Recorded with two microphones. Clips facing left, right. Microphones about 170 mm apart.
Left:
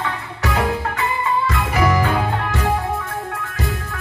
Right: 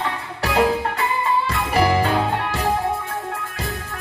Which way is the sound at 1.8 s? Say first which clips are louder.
Right 1 dB; 30° right (ahead or behind).